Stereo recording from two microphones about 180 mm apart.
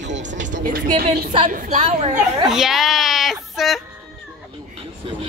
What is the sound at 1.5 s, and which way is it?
Speech, 40° right (ahead or behind).